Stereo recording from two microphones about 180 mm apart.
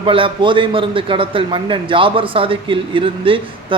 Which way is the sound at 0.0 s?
30° right (ahead or behind).